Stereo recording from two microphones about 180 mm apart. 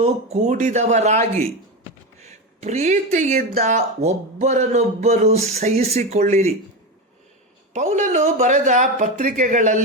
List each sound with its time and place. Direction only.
0.0 s speech: 40° right (ahead or behind)
3.8 s speech: 40° right (ahead or behind)
7.7 s speech: 40° right (ahead or behind)